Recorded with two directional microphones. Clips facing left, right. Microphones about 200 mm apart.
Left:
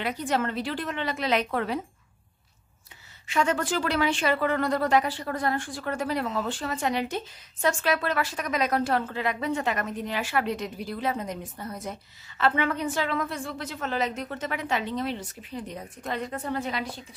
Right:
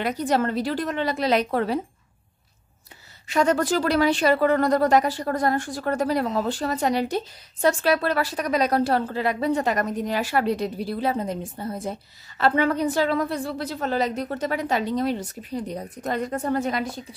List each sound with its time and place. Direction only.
0.0 s speech: 40° right (ahead or behind)
3.3 s speech: 40° right (ahead or behind)